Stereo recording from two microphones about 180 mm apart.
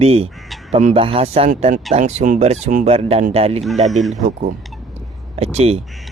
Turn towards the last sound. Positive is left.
turn(degrees=-35)  # may be behind; listen again after turning